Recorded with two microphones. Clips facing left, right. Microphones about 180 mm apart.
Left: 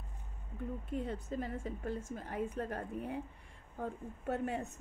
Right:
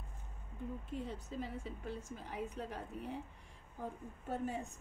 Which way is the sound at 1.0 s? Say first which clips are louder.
Left 4 dB; 50° left (ahead or behind).